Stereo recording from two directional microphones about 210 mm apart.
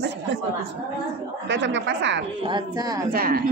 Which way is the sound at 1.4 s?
60° right (ahead or behind).